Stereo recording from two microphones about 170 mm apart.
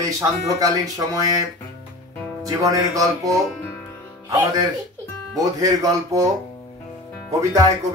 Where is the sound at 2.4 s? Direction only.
20° right (ahead or behind).